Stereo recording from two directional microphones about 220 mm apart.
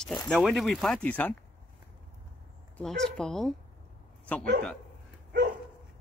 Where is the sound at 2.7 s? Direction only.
Centre (ahead or behind).